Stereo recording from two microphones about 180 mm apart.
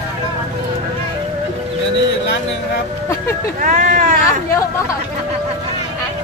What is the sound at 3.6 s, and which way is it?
Speech, 50° right (ahead or behind).